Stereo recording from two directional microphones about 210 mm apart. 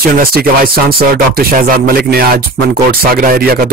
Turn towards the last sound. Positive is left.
turn(degrees=-45)  # may be behind; listen again after turning